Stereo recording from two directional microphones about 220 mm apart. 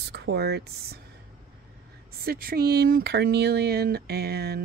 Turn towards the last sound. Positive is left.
turn(degrees=-45)  # may be behind; listen again after turning